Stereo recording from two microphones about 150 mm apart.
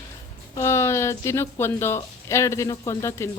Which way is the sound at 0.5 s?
20° left (ahead or behind).